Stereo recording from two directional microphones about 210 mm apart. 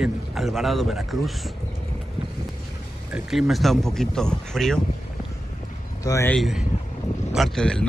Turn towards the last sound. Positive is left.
turn(degrees=5)  # may be behind; listen again after turning